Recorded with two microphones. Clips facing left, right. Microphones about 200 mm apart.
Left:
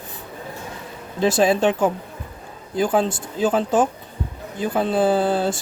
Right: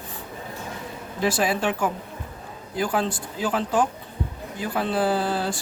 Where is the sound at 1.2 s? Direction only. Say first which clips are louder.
Left 6 dB; 25° left (ahead or behind).